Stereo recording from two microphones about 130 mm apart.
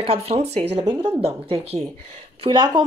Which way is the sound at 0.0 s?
50° right (ahead or behind).